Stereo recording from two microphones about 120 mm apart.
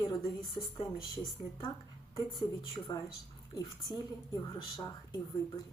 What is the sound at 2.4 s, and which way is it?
A woman's voice, 35° left (ahead or behind).